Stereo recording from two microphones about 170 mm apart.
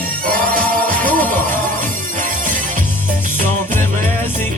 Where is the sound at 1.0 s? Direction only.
10° left (ahead or behind).